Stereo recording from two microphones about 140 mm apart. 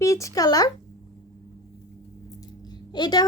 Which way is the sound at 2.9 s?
30° left (ahead or behind).